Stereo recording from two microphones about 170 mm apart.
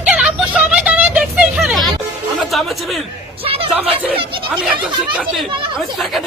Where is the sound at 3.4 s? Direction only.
35° right (ahead or behind).